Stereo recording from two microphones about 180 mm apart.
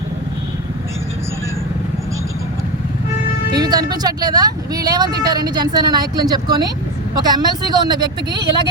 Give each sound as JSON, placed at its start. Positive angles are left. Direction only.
{"t": 3.5, "sound": "speech", "side_deg": -20}